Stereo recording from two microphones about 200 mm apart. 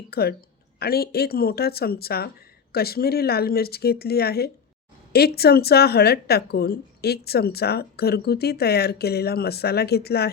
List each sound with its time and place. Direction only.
0.1 s speech: 50° left (ahead or behind)